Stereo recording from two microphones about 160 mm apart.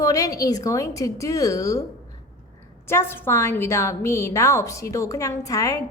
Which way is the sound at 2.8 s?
15° left (ahead or behind).